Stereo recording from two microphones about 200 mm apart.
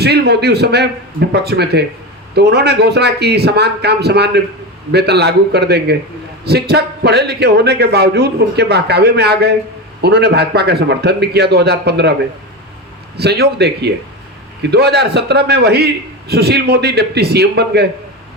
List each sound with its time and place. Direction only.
0.0 s a man's voice: 55° right (ahead or behind)
13.1 s a man's voice: 55° right (ahead or behind)